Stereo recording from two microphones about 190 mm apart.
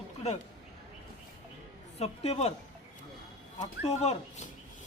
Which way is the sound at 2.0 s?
35° left (ahead or behind).